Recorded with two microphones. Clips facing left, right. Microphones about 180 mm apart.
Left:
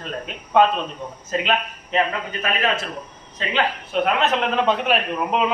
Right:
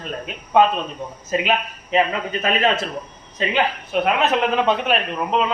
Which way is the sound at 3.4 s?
10° right (ahead or behind).